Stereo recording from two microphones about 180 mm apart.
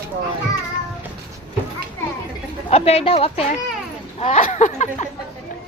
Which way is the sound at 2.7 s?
35° left (ahead or behind).